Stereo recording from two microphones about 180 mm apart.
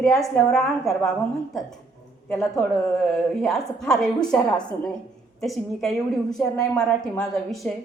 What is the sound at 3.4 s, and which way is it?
A woman's voice, centre (ahead or behind).